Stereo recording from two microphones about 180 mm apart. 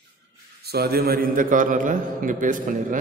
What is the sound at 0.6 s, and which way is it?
A man's voice, 60° right (ahead or behind).